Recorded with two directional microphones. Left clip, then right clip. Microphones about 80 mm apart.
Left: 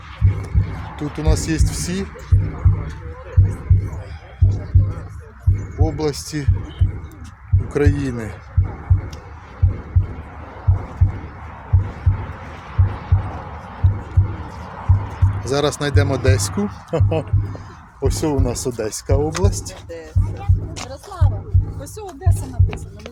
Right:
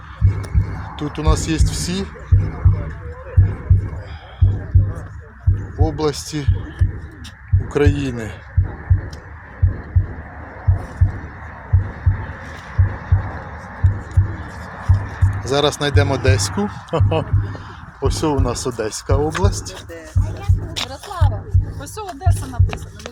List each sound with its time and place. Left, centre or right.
0.7 s speech: centre
5.8 s speech: centre
7.7 s speech: centre
11.9 s heart sounds: centre
15.4 s speech: left
21.8 s music: centre
22.4 s music: right